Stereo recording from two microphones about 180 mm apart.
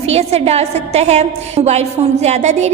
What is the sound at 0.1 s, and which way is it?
A woman's voice, 35° right (ahead or behind).